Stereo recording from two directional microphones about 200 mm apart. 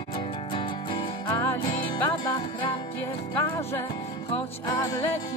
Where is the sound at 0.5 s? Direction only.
25° left (ahead or behind).